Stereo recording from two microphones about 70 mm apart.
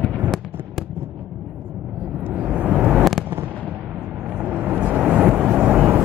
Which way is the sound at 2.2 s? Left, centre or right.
Right.